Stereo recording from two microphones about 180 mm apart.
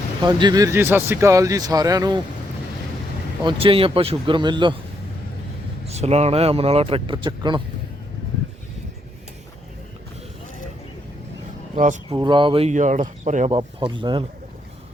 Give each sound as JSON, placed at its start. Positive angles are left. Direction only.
{"t": 0.2, "sound": "speech", "side_deg": -25}
{"t": 3.4, "sound": "speech", "side_deg": -30}
{"t": 5.9, "sound": "speech", "side_deg": -35}
{"t": 12.1, "sound": "speech", "side_deg": -25}
{"t": 13.5, "sound": "speech", "side_deg": -25}